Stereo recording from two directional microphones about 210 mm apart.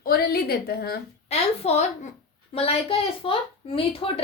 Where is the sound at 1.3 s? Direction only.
30° left (ahead or behind).